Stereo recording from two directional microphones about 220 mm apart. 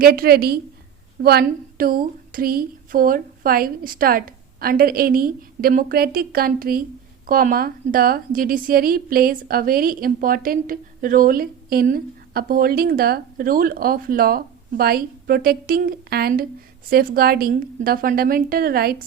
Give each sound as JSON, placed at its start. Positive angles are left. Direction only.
{"t": 0.0, "sound": "a woman's voice", "side_deg": -45}